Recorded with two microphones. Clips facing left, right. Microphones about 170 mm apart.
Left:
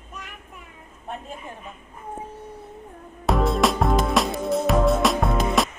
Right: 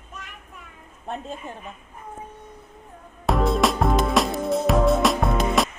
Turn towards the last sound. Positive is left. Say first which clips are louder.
# even
turn(degrees=0)  # may be behind; listen again after turning